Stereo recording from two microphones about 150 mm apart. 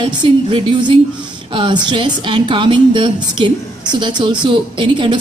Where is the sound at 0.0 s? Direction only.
35° right (ahead or behind).